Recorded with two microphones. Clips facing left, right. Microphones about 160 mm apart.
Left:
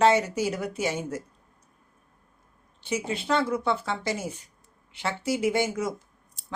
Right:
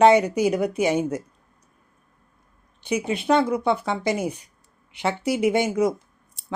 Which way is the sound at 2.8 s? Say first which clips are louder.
Right 5 dB; 15° right (ahead or behind).